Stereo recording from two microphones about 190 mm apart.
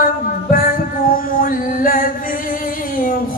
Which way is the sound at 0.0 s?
45° left (ahead or behind).